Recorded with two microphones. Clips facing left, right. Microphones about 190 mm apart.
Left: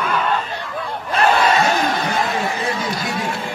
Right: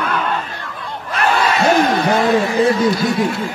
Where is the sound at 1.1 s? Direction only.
30° left (ahead or behind).